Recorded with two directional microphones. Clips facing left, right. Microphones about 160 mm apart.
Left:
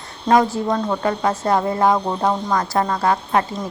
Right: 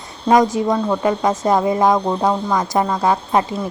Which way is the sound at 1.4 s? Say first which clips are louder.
Right 2 dB; 15° right (ahead or behind).